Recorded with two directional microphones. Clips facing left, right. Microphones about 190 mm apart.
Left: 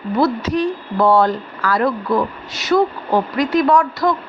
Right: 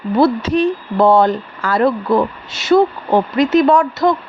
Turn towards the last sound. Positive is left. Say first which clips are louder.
# right 3 dB
turn(degrees=-25)  # may be behind; listen again after turning